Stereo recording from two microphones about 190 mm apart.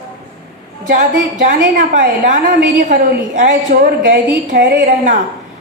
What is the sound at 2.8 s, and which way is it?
A woman's voice, 45° right (ahead or behind).